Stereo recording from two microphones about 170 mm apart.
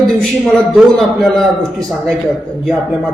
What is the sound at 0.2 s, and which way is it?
A man's voice, centre (ahead or behind).